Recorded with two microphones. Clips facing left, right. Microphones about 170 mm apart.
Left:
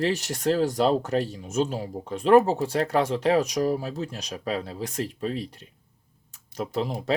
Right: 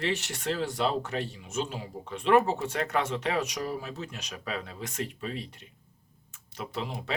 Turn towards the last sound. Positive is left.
turn(degrees=40)  # may be behind; listen again after turning